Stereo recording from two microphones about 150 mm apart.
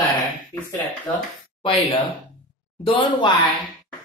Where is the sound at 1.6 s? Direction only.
35° left (ahead or behind).